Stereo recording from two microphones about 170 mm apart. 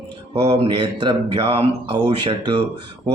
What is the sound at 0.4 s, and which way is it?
A man's voice, 30° right (ahead or behind).